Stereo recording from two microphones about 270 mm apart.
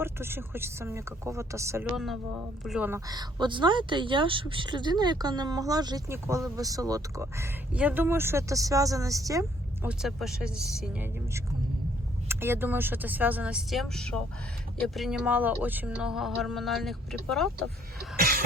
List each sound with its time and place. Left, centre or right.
0.0 s speech: centre
18.2 s cough: right